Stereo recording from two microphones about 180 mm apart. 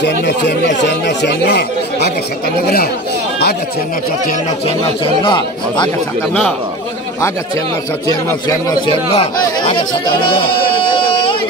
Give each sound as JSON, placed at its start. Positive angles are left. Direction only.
{"t": 0.0, "sound": "speech", "side_deg": 70}
{"t": 5.2, "sound": "speech", "side_deg": 25}
{"t": 8.1, "sound": "a man's voice", "side_deg": 15}